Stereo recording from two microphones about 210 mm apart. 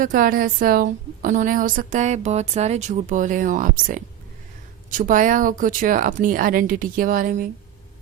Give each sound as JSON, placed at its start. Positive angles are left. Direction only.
{"t": 0.0, "sound": "a woman's voice", "side_deg": -40}